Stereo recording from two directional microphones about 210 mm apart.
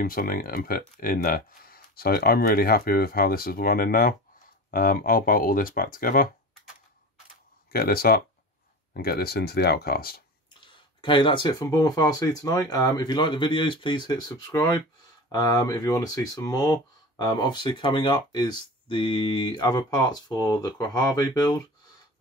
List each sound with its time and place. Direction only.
0.0 s speech: 40° left (ahead or behind)
7.7 s speech: 45° left (ahead or behind)
10.6 s speech: 25° left (ahead or behind)